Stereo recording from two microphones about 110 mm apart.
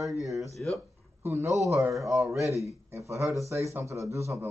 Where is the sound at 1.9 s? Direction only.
Centre (ahead or behind).